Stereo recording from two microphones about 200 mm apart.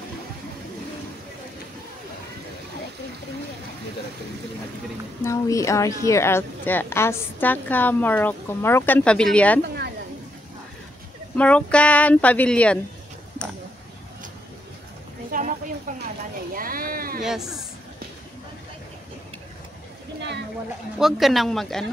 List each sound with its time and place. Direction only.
5.2 s a woman's voice: 15° left (ahead or behind)
9.6 s a woman's voice: 55° right (ahead or behind)
11.3 s a woman's voice: 5° left (ahead or behind)
15.3 s a sound: 45° right (ahead or behind)
16.5 s a sound: 45° right (ahead or behind)
17.2 s speech: centre (ahead or behind)
21.0 s speech: centre (ahead or behind)